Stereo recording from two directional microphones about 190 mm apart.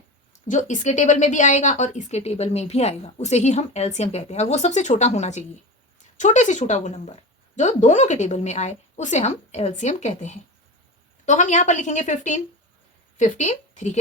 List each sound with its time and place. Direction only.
0.4 s a woman's voice: 40° left (ahead or behind)